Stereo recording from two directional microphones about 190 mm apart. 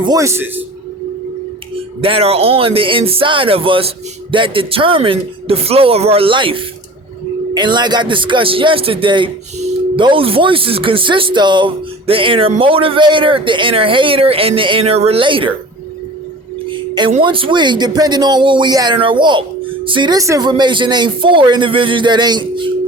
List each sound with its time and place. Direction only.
0.0 s a man's voice: 20° right (ahead or behind)
2.0 s speech: 30° right (ahead or behind)
16.6 s speech: 25° right (ahead or behind)